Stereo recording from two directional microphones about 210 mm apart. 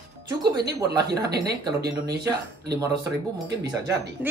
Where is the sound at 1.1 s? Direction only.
50° right (ahead or behind).